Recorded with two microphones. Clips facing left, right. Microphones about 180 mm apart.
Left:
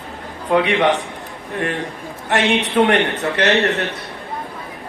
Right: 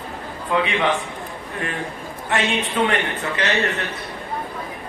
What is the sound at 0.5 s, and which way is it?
Speech, 70° left (ahead or behind).